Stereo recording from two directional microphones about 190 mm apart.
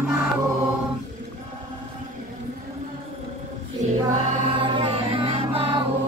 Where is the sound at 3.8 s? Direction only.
40° right (ahead or behind).